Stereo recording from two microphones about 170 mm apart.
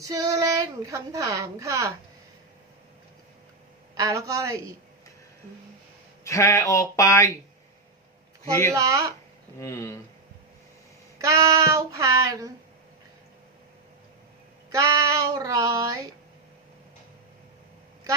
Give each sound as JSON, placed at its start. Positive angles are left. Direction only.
{"t": 0.0, "sound": "a woman's voice", "side_deg": -20}
{"t": 3.9, "sound": "a woman's voice", "side_deg": -20}
{"t": 6.2, "sound": "speech", "side_deg": 20}
{"t": 8.7, "sound": "a woman's voice", "side_deg": -20}
{"t": 9.6, "sound": "speech", "side_deg": 15}
{"t": 11.2, "sound": "a woman's voice", "side_deg": -20}
{"t": 14.7, "sound": "a woman's voice", "side_deg": -20}